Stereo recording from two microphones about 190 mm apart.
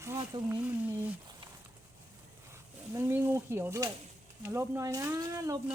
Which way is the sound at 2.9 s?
15° right (ahead or behind).